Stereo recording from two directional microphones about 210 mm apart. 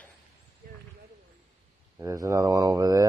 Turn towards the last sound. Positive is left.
turn(degrees=-15)  # may be behind; listen again after turning